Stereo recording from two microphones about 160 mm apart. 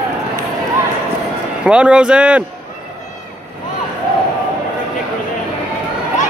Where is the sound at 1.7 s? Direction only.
5° right (ahead or behind).